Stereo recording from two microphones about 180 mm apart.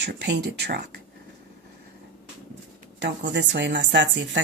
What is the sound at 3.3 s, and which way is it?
Speech, 75° right (ahead or behind).